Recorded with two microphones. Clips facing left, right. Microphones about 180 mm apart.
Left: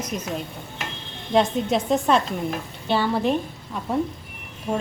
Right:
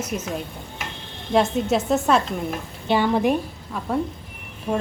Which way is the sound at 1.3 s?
5° right (ahead or behind).